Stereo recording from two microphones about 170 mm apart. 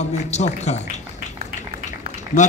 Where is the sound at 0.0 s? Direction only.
40° left (ahead or behind).